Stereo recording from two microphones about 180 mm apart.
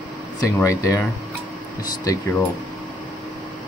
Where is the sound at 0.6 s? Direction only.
15° left (ahead or behind).